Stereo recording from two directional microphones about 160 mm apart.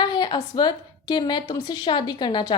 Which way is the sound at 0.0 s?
30° left (ahead or behind).